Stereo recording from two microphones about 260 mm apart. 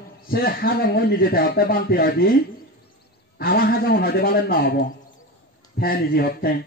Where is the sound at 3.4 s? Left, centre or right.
Left.